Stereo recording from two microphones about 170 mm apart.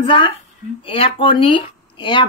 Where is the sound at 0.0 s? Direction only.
30° left (ahead or behind).